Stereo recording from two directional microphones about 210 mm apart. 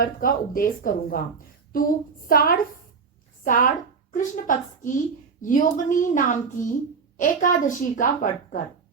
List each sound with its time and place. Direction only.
0.0 s speech: 40° left (ahead or behind)
2.2 s speech: 45° left (ahead or behind)